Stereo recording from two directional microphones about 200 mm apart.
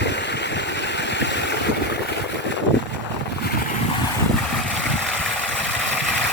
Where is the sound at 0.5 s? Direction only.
60° left (ahead or behind).